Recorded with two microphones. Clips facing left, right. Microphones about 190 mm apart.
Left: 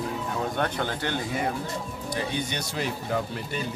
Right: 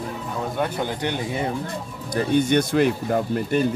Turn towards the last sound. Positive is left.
turn(degrees=-50)  # may be behind; listen again after turning